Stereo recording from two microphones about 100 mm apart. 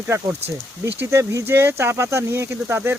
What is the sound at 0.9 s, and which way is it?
Speech, 25° right (ahead or behind).